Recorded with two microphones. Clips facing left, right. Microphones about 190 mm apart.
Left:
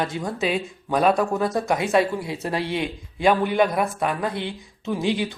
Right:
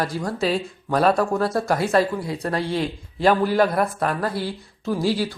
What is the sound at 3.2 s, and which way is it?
Speech, centre (ahead or behind).